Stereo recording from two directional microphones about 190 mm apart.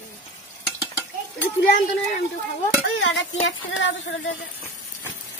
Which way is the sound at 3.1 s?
70° left (ahead or behind).